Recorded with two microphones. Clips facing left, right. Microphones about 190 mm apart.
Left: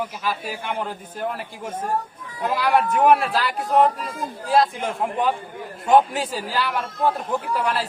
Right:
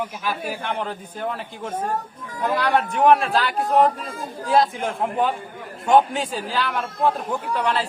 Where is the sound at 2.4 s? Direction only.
5° left (ahead or behind).